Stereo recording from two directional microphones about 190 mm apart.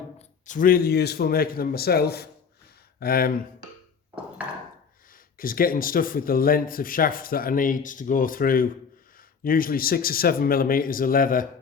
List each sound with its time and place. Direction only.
0.2 s speech: 40° left (ahead or behind)
5.4 s speech: 50° left (ahead or behind)